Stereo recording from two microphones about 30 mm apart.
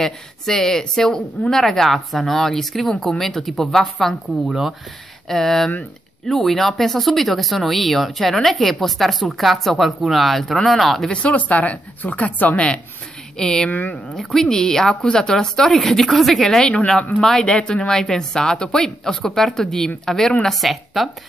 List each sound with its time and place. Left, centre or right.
0.0 s speech: centre
11.3 s speech: left
13.4 s a woman's voice: left
13.7 s speech: left
14.4 s a woman's voice: centre
15.7 s speech: centre
16.4 s a woman's voice: left
17.5 s speech: left
17.8 s a woman's voice: left
18.4 s speech: left
18.8 s speech: centre
20.5 s speech: centre